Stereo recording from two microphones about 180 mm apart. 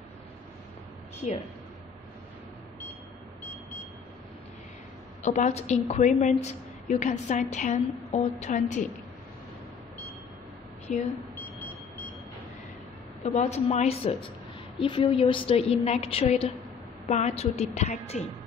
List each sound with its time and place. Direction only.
5.2 s a woman's voice: 40° left (ahead or behind)
10.9 s a woman's voice: 40° left (ahead or behind)
13.2 s a woman's voice: 40° left (ahead or behind)